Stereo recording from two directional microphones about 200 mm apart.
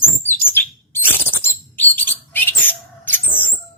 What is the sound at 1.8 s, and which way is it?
Bird, 10° left (ahead or behind).